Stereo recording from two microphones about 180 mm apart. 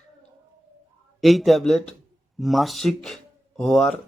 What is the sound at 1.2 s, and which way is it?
A man's voice, centre (ahead or behind).